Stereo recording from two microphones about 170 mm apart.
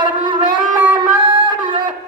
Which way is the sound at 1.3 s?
30° right (ahead or behind).